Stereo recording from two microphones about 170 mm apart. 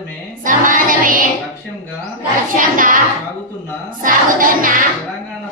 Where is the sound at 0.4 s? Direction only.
50° right (ahead or behind).